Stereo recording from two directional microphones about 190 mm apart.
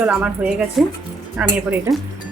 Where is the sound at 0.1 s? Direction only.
5° right (ahead or behind).